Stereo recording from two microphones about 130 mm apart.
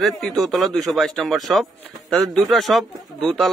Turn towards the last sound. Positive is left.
turn(degrees=0)  # may be behind; listen again after turning